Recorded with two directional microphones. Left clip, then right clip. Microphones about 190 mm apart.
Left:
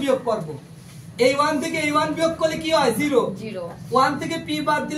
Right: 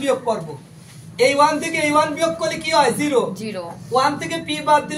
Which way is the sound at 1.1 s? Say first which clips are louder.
Right 4 dB; 20° left (ahead or behind).